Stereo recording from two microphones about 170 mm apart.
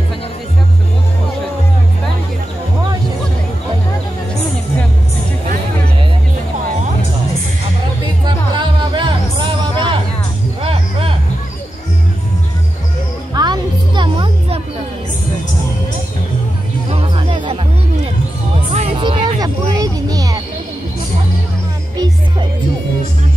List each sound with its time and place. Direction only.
8.3 s music: 30° right (ahead or behind)
13.3 s music: 25° right (ahead or behind)
16.9 s music: 35° right (ahead or behind)
18.7 s music: 40° right (ahead or behind)
19.8 s a sound: 20° right (ahead or behind)